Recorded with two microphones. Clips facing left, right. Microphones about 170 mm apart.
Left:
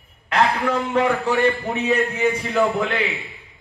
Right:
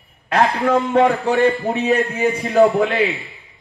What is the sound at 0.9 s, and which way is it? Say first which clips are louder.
Speech: right 4 dB; 40° right (ahead or behind).